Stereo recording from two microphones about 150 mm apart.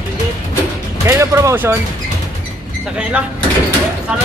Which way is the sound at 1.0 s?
20° right (ahead or behind).